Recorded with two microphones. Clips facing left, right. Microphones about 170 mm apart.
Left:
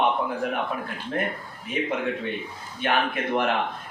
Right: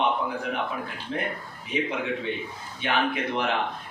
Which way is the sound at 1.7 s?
50° left (ahead or behind).